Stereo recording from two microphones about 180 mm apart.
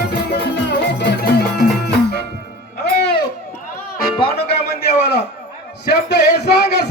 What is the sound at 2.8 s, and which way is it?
Music, 65° left (ahead or behind).